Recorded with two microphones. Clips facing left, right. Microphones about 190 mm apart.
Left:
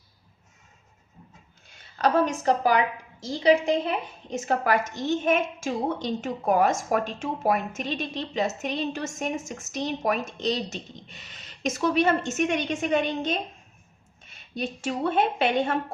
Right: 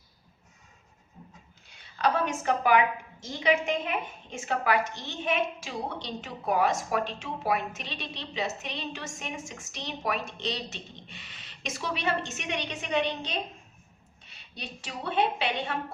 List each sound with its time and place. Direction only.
1.7 s a woman's voice: 45° left (ahead or behind)